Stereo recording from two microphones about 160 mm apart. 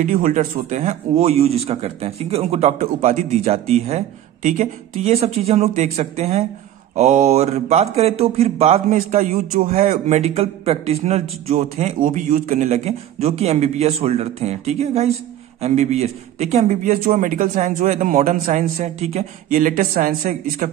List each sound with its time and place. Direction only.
0.0 s a man's voice: 50° right (ahead or behind)
12.0 s a man's voice: 55° right (ahead or behind)